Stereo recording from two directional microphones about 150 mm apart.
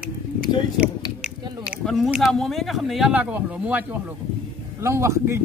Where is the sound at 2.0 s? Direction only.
5° right (ahead or behind).